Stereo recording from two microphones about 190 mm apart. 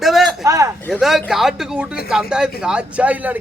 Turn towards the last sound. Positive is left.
turn(degrees=-10)  # may be behind; listen again after turning